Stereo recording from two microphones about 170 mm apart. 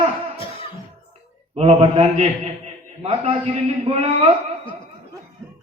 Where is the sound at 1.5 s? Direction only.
40° right (ahead or behind).